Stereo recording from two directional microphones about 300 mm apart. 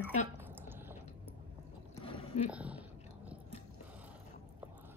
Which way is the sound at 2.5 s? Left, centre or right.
Centre.